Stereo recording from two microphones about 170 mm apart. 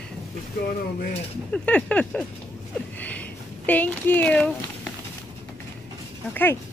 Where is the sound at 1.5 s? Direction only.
5° left (ahead or behind).